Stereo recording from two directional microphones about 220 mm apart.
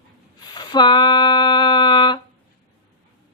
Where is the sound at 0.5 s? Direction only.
20° left (ahead or behind).